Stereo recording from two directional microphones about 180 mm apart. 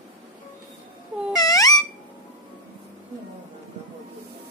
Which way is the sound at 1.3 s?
20° left (ahead or behind).